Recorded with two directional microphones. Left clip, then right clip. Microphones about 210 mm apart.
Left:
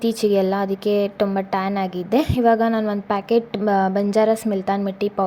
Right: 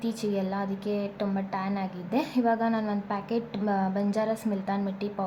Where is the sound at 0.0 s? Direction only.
35° left (ahead or behind).